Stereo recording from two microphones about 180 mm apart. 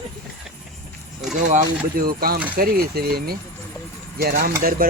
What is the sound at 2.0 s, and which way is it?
Speech, 55° right (ahead or behind).